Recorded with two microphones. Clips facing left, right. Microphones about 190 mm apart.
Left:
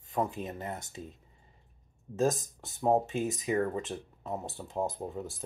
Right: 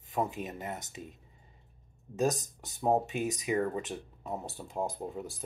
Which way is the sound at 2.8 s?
Centre (ahead or behind).